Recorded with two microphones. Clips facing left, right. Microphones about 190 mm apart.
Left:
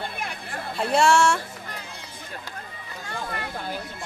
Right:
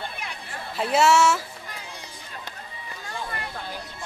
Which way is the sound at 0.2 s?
50° left (ahead or behind).